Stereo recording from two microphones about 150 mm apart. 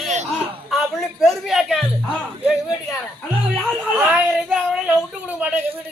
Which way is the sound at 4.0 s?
10° right (ahead or behind).